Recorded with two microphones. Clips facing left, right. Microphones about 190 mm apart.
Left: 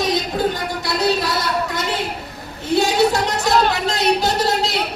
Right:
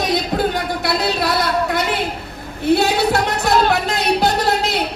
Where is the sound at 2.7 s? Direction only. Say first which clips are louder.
Left 6 dB; 60° right (ahead or behind).